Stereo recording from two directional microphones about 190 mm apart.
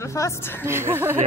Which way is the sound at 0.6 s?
10° right (ahead or behind).